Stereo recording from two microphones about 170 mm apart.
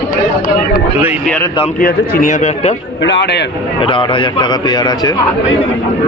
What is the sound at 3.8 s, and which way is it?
A man's voice, 30° left (ahead or behind).